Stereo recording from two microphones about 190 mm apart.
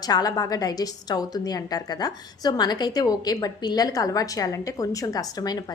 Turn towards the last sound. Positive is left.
turn(degrees=20)  # may be behind; listen again after turning